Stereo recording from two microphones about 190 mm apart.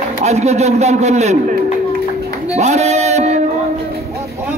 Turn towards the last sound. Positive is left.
turn(degrees=-35)  # may be behind; listen again after turning